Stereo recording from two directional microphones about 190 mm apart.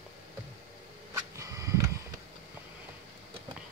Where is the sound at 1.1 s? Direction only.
15° right (ahead or behind).